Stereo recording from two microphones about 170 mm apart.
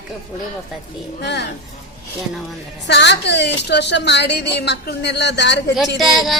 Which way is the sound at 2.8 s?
90° left.